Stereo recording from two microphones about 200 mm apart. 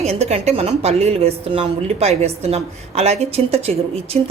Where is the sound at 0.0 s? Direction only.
30° right (ahead or behind).